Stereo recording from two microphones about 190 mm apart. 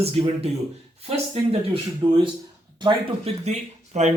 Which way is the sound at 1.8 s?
25° right (ahead or behind).